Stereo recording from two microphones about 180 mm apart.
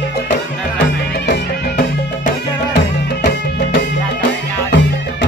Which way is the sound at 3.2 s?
65° left (ahead or behind).